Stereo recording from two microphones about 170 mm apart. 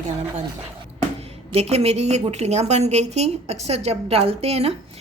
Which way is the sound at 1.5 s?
40° right (ahead or behind).